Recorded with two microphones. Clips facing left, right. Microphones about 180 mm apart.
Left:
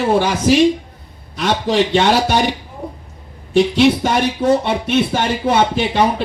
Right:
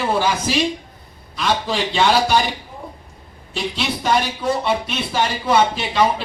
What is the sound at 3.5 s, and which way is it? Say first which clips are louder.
Speech: left 12 dB; 60° left (ahead or behind).